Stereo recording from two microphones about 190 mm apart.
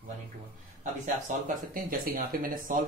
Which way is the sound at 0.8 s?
40° right (ahead or behind).